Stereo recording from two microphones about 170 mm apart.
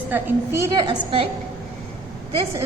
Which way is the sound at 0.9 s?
30° right (ahead or behind).